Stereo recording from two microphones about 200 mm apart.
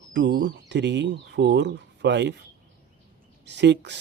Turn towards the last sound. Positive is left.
turn(degrees=-60)  # may be behind; listen again after turning